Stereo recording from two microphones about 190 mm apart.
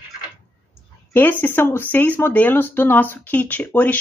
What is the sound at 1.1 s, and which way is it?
Speech, 10° left (ahead or behind).